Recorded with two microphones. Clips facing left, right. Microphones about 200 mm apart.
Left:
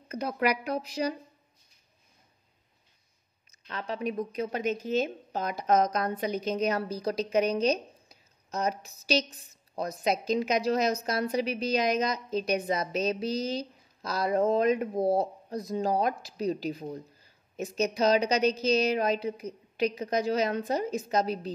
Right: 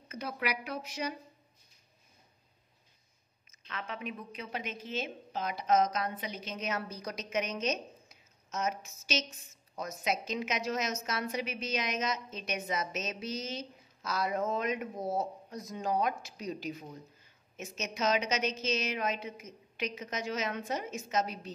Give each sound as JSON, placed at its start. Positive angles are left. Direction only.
{"t": 0.1, "sound": "a woman's voice", "side_deg": 40}
{"t": 3.6, "sound": "a woman's voice", "side_deg": 35}